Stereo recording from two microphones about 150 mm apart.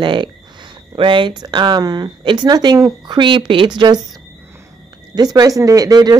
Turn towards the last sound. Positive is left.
turn(degrees=-25)  # may be behind; listen again after turning